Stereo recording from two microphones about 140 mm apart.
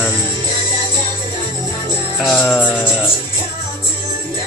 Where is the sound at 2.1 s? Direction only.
Centre (ahead or behind).